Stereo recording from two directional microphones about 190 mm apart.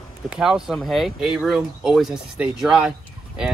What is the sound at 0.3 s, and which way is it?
Speech, 5° right (ahead or behind).